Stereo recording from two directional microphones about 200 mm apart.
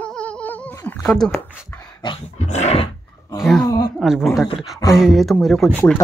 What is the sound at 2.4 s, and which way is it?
Dog, 35° left (ahead or behind).